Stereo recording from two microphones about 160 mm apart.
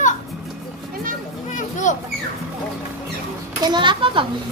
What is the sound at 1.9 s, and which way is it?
Children playing, 50° left (ahead or behind).